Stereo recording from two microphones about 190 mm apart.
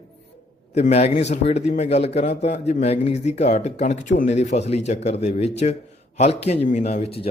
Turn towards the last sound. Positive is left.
turn(degrees=30)  # may be behind; listen again after turning